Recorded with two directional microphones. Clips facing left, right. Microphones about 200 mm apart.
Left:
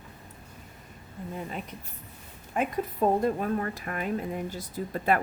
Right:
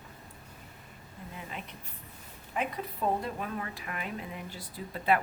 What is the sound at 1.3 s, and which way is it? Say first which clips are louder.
Speech: left 7 dB; 40° left (ahead or behind).